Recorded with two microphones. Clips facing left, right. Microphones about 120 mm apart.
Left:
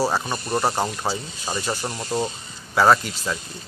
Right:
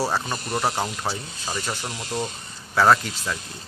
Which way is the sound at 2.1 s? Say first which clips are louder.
Left 4 dB; 35° left (ahead or behind).